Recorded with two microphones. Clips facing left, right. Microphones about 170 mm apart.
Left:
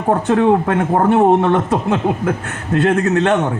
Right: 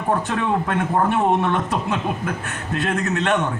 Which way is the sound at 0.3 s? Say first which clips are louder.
Left 8 dB; 60° left (ahead or behind).